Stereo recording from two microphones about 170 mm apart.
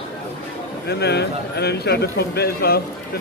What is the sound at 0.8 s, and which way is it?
Speech, 70° left (ahead or behind).